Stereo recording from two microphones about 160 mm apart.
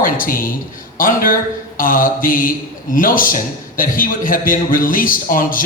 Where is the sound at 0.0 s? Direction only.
60° left (ahead or behind).